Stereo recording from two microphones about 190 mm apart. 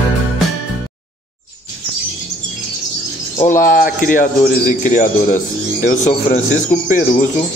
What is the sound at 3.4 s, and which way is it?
Speech, 45° left (ahead or behind).